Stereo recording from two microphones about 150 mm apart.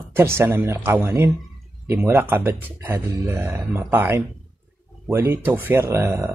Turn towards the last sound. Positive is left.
turn(degrees=-15)  # may be behind; listen again after turning